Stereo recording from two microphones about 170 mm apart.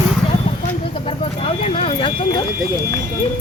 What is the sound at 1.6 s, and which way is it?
Speech, 35° left (ahead or behind).